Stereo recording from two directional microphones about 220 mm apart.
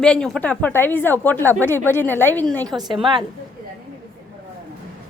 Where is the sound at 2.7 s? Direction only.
20° right (ahead or behind).